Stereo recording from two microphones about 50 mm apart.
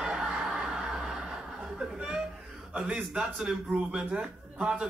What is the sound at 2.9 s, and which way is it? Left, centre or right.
A man's voice, centre.